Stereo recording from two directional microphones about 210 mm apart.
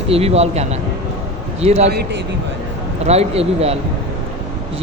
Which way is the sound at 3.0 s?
30° right (ahead or behind).